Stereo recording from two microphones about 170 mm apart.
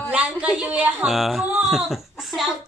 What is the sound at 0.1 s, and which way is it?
Speech, 5° right (ahead or behind).